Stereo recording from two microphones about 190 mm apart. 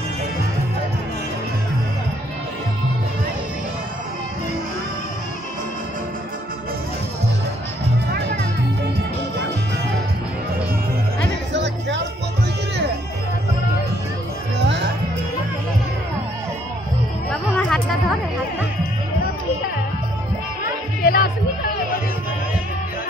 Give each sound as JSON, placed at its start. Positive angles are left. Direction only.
{"t": 11.5, "sound": "music", "side_deg": -70}
{"t": 14.6, "sound": "music", "side_deg": -65}
{"t": 17.3, "sound": "music", "side_deg": 5}
{"t": 21.0, "sound": "music", "side_deg": 50}